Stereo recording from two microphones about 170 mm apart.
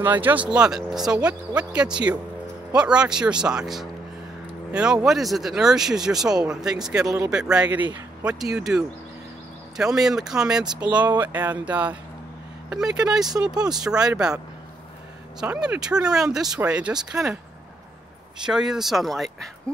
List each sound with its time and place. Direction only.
0.0 s speech: 10° right (ahead or behind)
7.0 s speech: 20° right (ahead or behind)
7.2 s speech: 5° right (ahead or behind)
15.4 s speech: 10° right (ahead or behind)
18.4 s speech: 5° right (ahead or behind)